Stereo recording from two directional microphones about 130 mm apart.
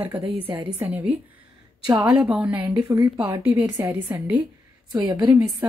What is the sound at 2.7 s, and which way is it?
Speech, 30° right (ahead or behind).